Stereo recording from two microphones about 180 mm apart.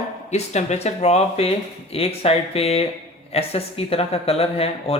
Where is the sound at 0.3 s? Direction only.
40° left (ahead or behind).